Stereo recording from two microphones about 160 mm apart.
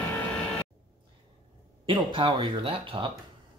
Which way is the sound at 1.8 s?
30° right (ahead or behind).